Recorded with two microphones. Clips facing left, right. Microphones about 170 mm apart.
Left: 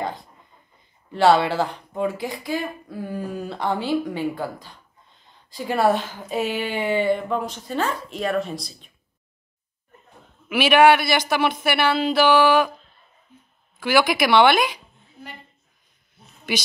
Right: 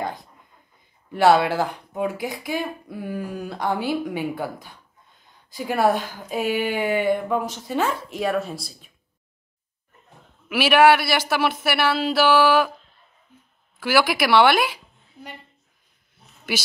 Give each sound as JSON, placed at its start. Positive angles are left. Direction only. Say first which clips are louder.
{"t": 1.1, "sound": "speech", "louder": "even", "side_deg": -5}
{"t": 4.2, "sound": "speech", "louder": "left 1 dB", "side_deg": -15}
{"t": 5.6, "sound": "speech", "louder": "even", "side_deg": 0}
{"t": 7.1, "sound": "speech", "louder": "right 1 dB", "side_deg": -15}
{"t": 10.5, "sound": "speech", "louder": "left 1 dB", "side_deg": -5}
{"t": 13.7, "sound": "speech", "louder": "left 1 dB", "side_deg": -5}